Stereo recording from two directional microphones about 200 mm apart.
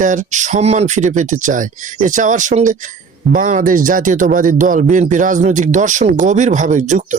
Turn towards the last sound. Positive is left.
turn(degrees=-40)  # may be behind; listen again after turning